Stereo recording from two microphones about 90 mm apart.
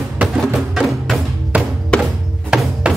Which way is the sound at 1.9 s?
10° left (ahead or behind).